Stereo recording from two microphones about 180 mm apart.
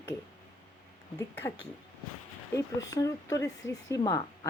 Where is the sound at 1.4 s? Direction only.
20° left (ahead or behind).